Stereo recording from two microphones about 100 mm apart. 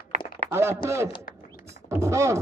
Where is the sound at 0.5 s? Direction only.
25° right (ahead or behind).